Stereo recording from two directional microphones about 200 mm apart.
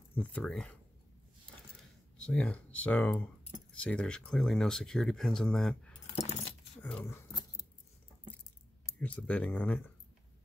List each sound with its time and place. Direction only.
0.1 s speech: 5° left (ahead or behind)
2.1 s speech: 5° left (ahead or behind)
6.1 s keys jangling: 35° left (ahead or behind)
6.8 s a sound: 10° left (ahead or behind)
9.0 s speech: 5° left (ahead or behind)